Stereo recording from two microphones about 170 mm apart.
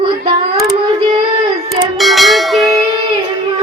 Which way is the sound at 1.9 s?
Centre (ahead or behind).